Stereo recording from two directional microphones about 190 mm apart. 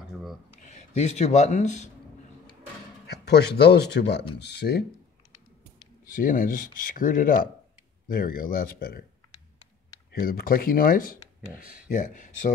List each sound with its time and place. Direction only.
0.5 s a man's voice: 35° left (ahead or behind)
3.1 s speech: 60° left (ahead or behind)
6.1 s speech: 45° left (ahead or behind)
10.2 s speech: 50° left (ahead or behind)